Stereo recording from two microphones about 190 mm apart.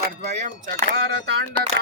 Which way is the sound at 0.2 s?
40° right (ahead or behind).